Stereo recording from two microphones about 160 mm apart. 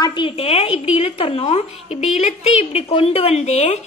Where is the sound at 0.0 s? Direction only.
30° left (ahead or behind).